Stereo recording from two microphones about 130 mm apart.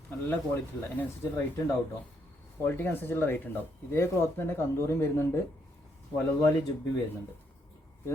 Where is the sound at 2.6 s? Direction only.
15° left (ahead or behind).